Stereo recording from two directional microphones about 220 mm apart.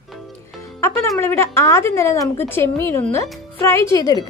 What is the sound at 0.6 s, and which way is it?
A woman's voice, 15° left (ahead or behind).